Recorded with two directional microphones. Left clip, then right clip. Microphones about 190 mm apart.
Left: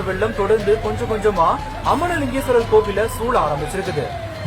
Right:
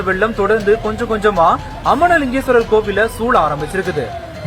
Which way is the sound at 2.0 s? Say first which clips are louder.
Right 8 dB; 20° right (ahead or behind).